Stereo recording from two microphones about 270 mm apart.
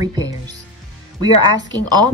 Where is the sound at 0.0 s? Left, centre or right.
Centre.